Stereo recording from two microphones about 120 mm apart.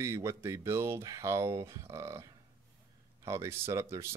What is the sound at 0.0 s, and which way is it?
Speech, 25° right (ahead or behind).